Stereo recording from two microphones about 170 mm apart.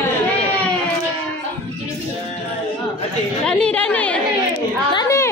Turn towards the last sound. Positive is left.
turn(degrees=20)  # may be behind; listen again after turning